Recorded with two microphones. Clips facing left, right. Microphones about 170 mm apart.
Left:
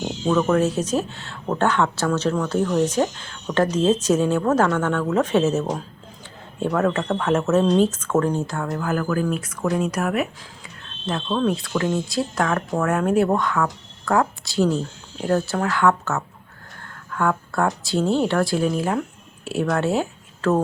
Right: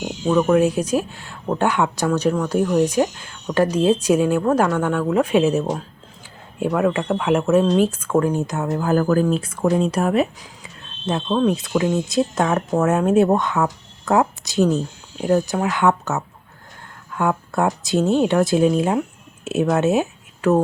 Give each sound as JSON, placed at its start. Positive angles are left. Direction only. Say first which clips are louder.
{"t": 0.0, "sound": "speech", "louder": "right 2 dB", "side_deg": -10}